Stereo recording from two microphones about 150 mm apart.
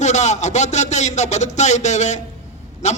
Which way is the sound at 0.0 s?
50° left (ahead or behind).